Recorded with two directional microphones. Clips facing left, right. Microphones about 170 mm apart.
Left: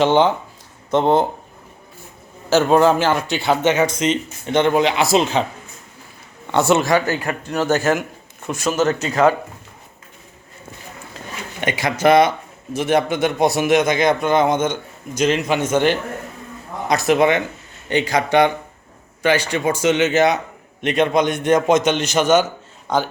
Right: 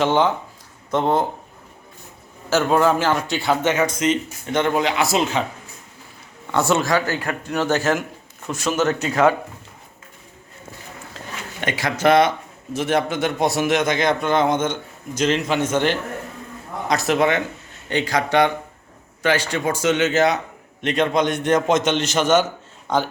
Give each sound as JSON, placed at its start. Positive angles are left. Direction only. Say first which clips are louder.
{"t": 0.0, "sound": "a man's voice", "louder": "left 3 dB", "side_deg": 25}
{"t": 2.5, "sound": "speech", "louder": "left 3 dB", "side_deg": 25}
{"t": 6.5, "sound": "speech", "louder": "left 3 dB", "side_deg": 20}
{"t": 7.4, "sound": "speech", "louder": "left 2 dB", "side_deg": 5}
{"t": 11.6, "sound": "a man's voice", "louder": "left 2 dB", "side_deg": 15}